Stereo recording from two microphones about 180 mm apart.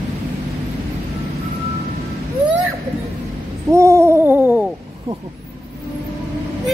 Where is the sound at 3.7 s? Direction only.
15° right (ahead or behind).